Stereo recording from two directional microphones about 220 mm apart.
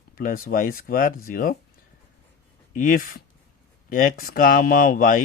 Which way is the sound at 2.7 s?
40° left (ahead or behind).